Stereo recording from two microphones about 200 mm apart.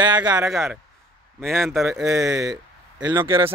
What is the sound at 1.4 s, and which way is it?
Speech, 10° right (ahead or behind).